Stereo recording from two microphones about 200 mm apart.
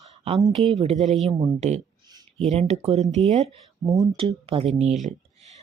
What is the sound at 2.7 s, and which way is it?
Speech, 30° right (ahead or behind).